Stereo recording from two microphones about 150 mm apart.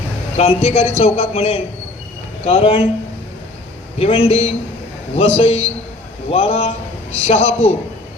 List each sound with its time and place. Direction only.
0.3 s a man's voice: 40° left (ahead or behind)
3.9 s a man's voice: 40° left (ahead or behind)